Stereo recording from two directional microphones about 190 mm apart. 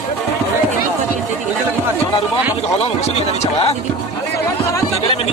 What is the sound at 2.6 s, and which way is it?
Speech, 35° left (ahead or behind).